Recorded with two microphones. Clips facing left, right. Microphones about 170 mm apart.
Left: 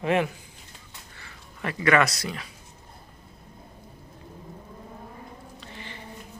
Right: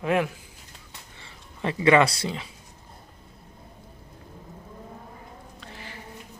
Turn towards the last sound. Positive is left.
turn(degrees=-5)  # may be behind; listen again after turning